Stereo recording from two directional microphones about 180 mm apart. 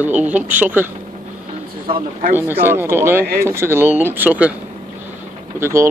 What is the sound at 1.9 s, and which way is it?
Speech, 30° right (ahead or behind).